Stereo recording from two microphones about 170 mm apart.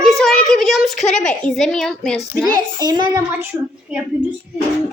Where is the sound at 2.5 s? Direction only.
25° right (ahead or behind).